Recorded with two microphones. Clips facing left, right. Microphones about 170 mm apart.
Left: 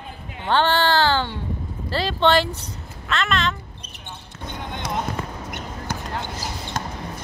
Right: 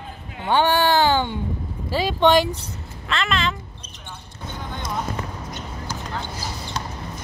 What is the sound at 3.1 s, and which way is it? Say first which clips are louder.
Speech: even; centre (ahead or behind).